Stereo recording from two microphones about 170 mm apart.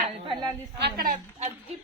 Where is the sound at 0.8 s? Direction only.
60° right (ahead or behind).